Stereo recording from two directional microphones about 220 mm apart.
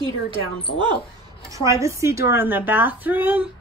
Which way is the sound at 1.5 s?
15° right (ahead or behind).